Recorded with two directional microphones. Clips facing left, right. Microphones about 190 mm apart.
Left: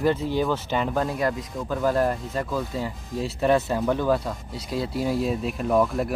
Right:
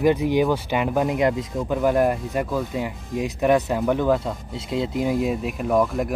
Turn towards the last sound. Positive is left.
turn(degrees=0)  # may be behind; listen again after turning